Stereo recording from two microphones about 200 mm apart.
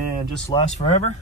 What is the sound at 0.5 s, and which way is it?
Speech, 30° left (ahead or behind).